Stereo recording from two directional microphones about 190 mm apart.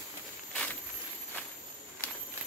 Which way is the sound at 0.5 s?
5° left (ahead or behind).